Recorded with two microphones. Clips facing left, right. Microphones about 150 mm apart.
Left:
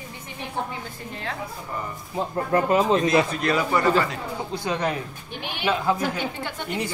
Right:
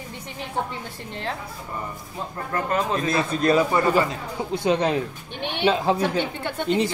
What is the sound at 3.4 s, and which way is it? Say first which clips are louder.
Speech: right 3 dB; 25° right (ahead or behind).